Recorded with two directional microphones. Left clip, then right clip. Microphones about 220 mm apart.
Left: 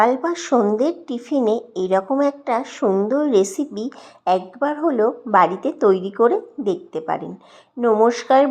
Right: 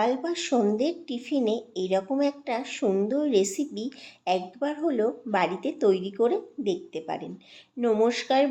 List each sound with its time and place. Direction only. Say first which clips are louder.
0.0 s speech: left 9 dB; 15° left (ahead or behind)
2.8 s speech: left 6 dB; 5° right (ahead or behind)
3.2 s speech: left 7 dB; 15° left (ahead or behind)
4.8 s speech: left 7 dB; centre (ahead or behind)
5.6 s speech: left 7 dB; 15° left (ahead or behind)